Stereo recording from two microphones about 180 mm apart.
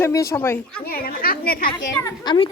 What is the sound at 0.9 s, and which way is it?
Speech, 55° left (ahead or behind).